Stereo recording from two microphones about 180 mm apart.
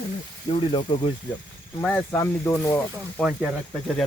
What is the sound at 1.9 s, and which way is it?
Speech, 15° left (ahead or behind).